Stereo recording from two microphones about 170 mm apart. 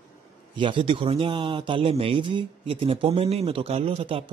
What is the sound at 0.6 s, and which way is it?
A man's voice, 30° right (ahead or behind).